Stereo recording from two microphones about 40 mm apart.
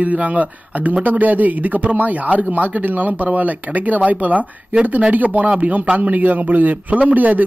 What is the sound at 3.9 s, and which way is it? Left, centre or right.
A man's voice, right.